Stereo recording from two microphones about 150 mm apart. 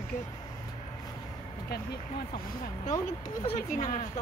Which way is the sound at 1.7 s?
90° left.